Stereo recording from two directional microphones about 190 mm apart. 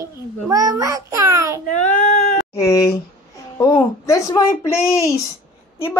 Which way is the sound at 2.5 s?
15° left (ahead or behind).